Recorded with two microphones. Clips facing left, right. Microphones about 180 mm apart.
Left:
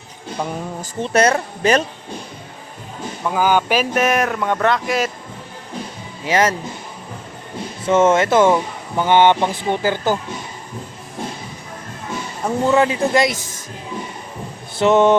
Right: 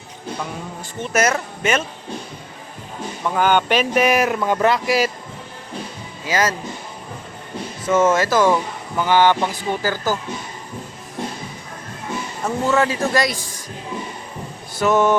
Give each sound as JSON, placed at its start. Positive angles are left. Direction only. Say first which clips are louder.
{"t": 0.9, "sound": "speech", "louder": "left 3 dB", "side_deg": 30}
{"t": 3.2, "sound": "speech", "louder": "left 1 dB", "side_deg": 5}
{"t": 6.2, "sound": "speech", "louder": "left 3 dB", "side_deg": 25}
{"t": 7.9, "sound": "speech", "louder": "left 2 dB", "side_deg": 25}
{"t": 12.5, "sound": "speech", "louder": "left 3 dB", "side_deg": 20}
{"t": 14.8, "sound": "speech", "louder": "left 3 dB", "side_deg": 25}